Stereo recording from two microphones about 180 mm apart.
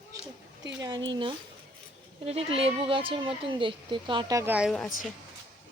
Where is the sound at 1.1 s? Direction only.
25° right (ahead or behind); by 4.9 s centre (ahead or behind).